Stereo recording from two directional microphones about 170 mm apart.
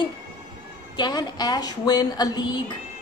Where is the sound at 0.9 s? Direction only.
25° left (ahead or behind).